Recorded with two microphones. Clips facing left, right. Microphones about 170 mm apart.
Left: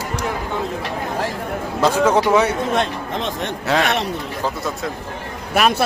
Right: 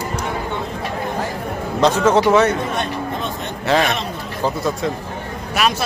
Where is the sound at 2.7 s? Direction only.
90° left.